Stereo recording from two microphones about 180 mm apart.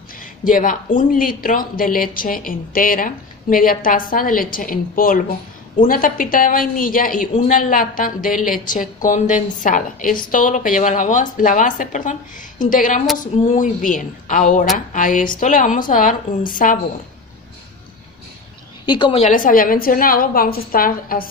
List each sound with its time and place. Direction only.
0.2 s speech: 50° left (ahead or behind)
18.9 s a woman's voice: 30° left (ahead or behind)
19.2 s speech: 50° left (ahead or behind)